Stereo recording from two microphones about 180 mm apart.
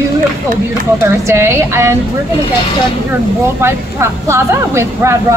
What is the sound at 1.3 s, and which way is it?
Speech, 15° right (ahead or behind).